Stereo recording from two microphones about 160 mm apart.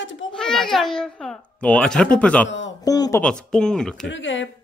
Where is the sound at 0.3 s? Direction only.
5° left (ahead or behind).